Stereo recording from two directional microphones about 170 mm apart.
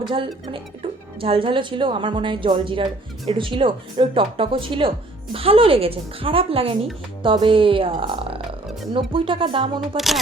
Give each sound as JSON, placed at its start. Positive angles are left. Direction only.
{"t": 0.0, "sound": "a woman's voice", "side_deg": -30}